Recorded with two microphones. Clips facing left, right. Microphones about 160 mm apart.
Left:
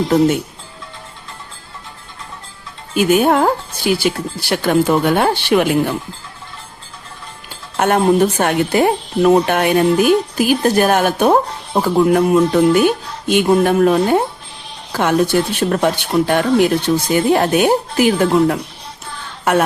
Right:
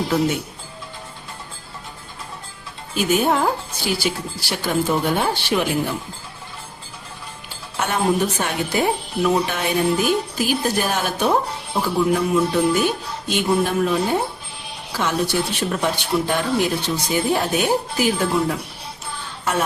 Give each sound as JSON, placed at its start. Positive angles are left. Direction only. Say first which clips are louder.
{"t": 2.9, "sound": "speech", "louder": "left 6 dB", "side_deg": 60}
{"t": 7.8, "sound": "speech", "louder": "left 7 dB", "side_deg": 55}